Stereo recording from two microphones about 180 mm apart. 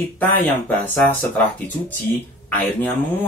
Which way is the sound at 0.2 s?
10° left (ahead or behind).